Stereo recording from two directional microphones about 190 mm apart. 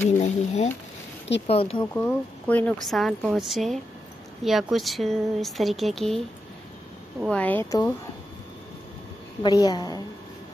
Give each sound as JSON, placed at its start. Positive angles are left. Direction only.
{"t": 0.0, "sound": "a sound", "side_deg": 35}
{"t": 1.5, "sound": "a woman's voice", "side_deg": 30}
{"t": 2.0, "sound": "a woman's voice", "side_deg": 10}
{"t": 9.4, "sound": "a woman's voice", "side_deg": 20}